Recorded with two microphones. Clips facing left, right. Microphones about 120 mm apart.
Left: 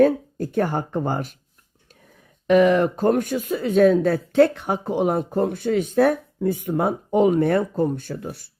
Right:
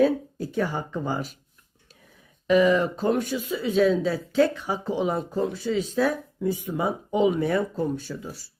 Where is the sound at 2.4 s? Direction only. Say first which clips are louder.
Left 4 dB; 55° left (ahead or behind).